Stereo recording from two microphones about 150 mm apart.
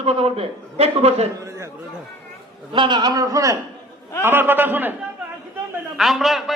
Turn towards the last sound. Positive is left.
turn(degrees=0)  # may be behind; listen again after turning